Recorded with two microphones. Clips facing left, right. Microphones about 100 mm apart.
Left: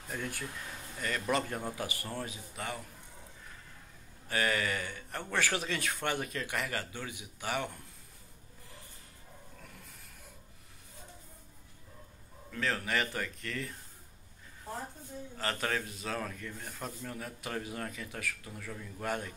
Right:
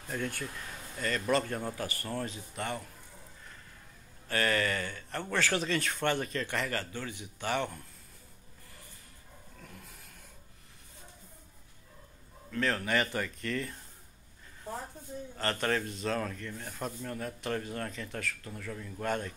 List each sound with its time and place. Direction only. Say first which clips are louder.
0.1 s speech: right 3 dB; 10° left (ahead or behind)
4.3 s speech: right 2 dB; 10° left (ahead or behind)
12.4 s speech: right 3 dB; centre (ahead or behind)
15.3 s speech: right 3 dB; 5° left (ahead or behind)